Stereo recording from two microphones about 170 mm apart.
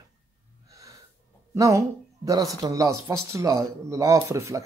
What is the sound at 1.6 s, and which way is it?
Speech, 20° right (ahead or behind).